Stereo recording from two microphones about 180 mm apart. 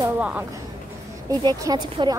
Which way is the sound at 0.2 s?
5° right (ahead or behind).